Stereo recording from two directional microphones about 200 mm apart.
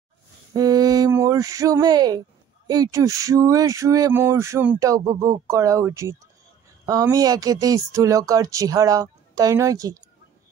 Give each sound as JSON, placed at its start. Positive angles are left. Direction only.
{"t": 0.5, "sound": "speech", "side_deg": -20}